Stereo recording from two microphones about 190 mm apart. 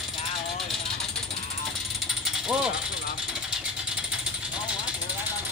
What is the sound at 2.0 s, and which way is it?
Mechanisms, 5° right (ahead or behind).